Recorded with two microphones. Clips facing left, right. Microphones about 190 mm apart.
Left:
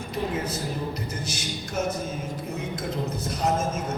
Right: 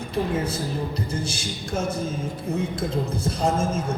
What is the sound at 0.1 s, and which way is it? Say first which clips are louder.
Speech: right 4 dB; 30° right (ahead or behind).